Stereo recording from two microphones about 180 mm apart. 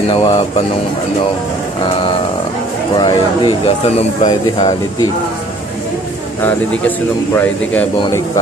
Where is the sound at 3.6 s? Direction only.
35° left (ahead or behind).